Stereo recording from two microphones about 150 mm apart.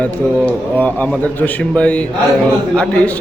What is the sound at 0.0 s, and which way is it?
A man's voice, 10° left (ahead or behind).